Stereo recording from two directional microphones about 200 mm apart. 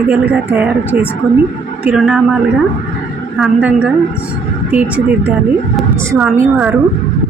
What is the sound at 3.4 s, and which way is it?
A woman's voice, 5° right (ahead or behind).